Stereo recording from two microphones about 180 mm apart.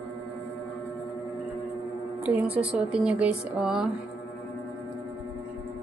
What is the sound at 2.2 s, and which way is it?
Speech, 10° right (ahead or behind).